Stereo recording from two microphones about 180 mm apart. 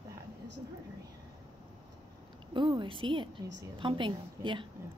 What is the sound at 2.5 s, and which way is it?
Speech, 25° right (ahead or behind).